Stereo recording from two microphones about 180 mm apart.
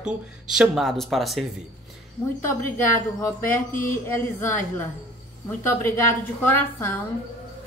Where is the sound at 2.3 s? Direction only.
15° left (ahead or behind).